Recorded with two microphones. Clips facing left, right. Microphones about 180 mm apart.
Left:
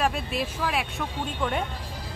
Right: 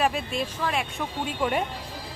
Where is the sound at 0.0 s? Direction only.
Centre (ahead or behind).